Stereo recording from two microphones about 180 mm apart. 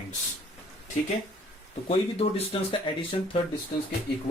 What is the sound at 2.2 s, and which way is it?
Speech, 35° left (ahead or behind).